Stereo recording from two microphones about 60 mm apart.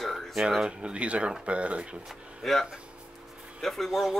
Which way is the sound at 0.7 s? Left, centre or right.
Centre.